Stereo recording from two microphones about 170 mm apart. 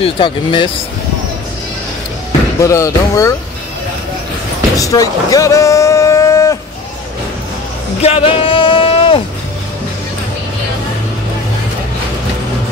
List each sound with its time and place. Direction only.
0.0 s speech: 30° left (ahead or behind)
2.6 s speech: 20° left (ahead or behind)
4.7 s speech: 20° left (ahead or behind)
8.0 s a sound: 35° left (ahead or behind)